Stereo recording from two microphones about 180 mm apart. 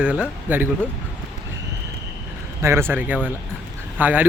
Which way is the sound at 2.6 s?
15° right (ahead or behind).